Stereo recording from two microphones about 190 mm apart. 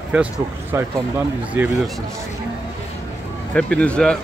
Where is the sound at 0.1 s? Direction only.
10° right (ahead or behind).